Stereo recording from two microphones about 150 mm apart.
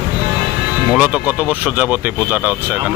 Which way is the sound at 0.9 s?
10° right (ahead or behind).